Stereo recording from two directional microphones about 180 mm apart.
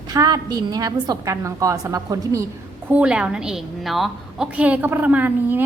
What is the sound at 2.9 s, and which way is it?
A woman's voice, 5° right (ahead or behind).